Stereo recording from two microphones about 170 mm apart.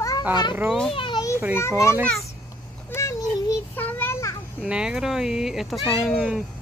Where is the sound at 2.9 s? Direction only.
15° left (ahead or behind).